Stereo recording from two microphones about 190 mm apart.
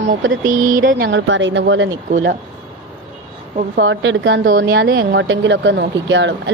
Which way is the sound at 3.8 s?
80° right.